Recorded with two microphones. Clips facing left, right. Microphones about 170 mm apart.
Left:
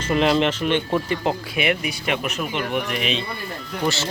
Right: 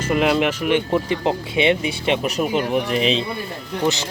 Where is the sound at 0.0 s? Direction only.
10° right (ahead or behind); by 3.2 s 30° right (ahead or behind).